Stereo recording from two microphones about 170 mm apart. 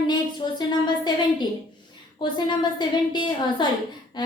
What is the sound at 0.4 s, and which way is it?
Speech, 30° left (ahead or behind).